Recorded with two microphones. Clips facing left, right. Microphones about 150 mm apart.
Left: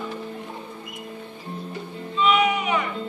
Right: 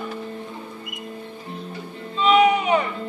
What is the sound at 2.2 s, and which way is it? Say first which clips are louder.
Music: right 4 dB; 35° right (ahead or behind).